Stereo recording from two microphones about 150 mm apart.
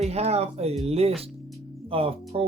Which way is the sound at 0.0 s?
45° right (ahead or behind).